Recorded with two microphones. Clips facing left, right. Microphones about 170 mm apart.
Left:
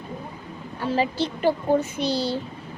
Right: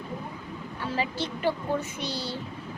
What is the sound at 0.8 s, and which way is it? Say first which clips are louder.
A child's voice: left 7 dB; 35° left (ahead or behind).